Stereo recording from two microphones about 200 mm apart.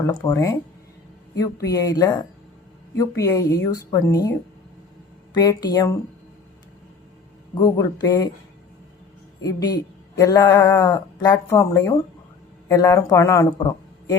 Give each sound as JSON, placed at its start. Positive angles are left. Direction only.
{"t": 0.0, "sound": "a woman's voice", "side_deg": 15}
{"t": 7.5, "sound": "speech", "side_deg": 20}
{"t": 9.4, "sound": "speech", "side_deg": 20}